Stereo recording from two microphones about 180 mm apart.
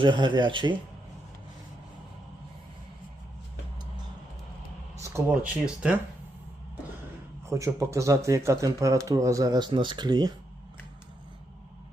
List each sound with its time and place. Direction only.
0.0 s speech: 25° right (ahead or behind)
5.1 s speech: 10° right (ahead or behind)
7.6 s speech: 15° right (ahead or behind)